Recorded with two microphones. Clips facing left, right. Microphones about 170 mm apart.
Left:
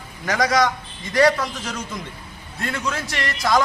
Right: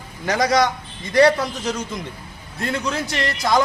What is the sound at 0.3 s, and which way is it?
A man's voice, 25° right (ahead or behind).